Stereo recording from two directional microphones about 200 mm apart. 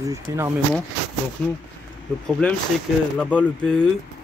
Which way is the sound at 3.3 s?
5° left (ahead or behind).